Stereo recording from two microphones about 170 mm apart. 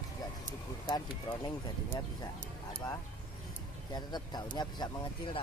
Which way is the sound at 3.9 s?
25° left (ahead or behind).